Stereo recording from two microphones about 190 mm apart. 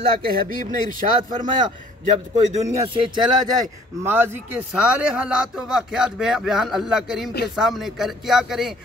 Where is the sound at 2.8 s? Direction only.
25° right (ahead or behind).